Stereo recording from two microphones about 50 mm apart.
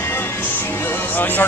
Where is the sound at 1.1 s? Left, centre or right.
Left.